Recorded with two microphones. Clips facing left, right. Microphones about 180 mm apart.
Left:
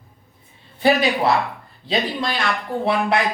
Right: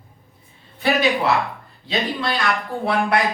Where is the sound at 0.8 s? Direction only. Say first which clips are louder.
Left 2 dB; 35° left (ahead or behind).